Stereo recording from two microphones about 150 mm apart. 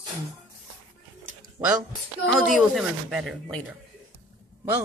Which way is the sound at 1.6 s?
15° right (ahead or behind).